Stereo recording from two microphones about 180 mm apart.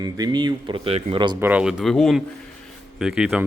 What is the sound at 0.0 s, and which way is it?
Speech, 20° right (ahead or behind).